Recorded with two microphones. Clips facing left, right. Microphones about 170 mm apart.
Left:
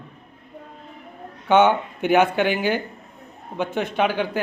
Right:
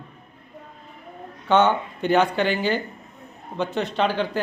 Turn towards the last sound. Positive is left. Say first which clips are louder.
# left 1 dB
turn(degrees=10)  # may be behind; listen again after turning